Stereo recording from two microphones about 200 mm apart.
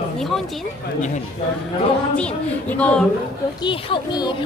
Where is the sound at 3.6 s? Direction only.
25° left (ahead or behind).